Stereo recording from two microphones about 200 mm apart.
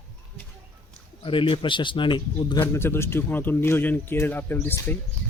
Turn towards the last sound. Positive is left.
turn(degrees=10)  # may be behind; listen again after turning